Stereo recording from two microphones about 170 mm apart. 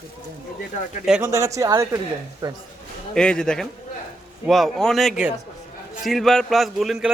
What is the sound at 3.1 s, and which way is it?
Speech, 5° left (ahead or behind).